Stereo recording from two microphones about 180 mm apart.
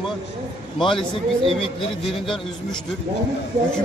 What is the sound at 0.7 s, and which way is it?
Speech, centre (ahead or behind).